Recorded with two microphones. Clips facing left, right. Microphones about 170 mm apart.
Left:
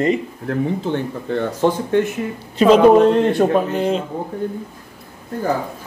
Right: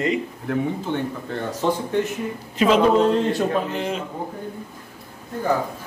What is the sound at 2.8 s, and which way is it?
Speech, 55° left (ahead or behind).